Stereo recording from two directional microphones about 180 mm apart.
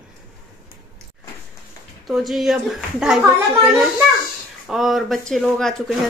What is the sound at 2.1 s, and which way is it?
Speech, centre (ahead or behind).